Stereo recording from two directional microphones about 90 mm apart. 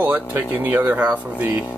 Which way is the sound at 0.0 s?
20° right (ahead or behind).